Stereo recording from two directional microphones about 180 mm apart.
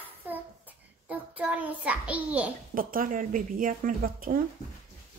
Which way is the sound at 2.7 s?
50° right (ahead or behind).